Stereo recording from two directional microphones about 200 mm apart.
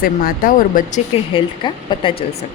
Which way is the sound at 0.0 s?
45° left (ahead or behind).